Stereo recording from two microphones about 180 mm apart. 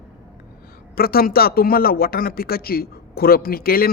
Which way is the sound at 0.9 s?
55° left (ahead or behind).